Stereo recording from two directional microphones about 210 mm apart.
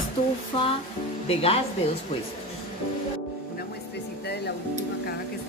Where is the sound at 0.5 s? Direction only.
25° left (ahead or behind).